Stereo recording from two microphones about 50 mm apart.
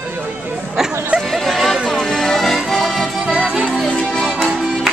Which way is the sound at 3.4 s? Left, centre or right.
Centre.